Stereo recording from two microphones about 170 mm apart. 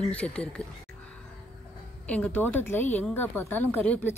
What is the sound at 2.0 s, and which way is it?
A woman's voice, 5° left (ahead or behind).